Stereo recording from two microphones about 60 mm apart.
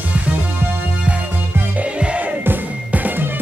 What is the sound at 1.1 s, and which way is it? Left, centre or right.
Music, right.